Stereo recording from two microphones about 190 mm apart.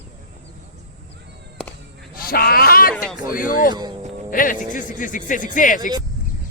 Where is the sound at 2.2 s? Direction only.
50° left (ahead or behind).